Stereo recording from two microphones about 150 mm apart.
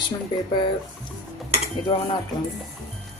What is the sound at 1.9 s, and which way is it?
Speech, 30° left (ahead or behind).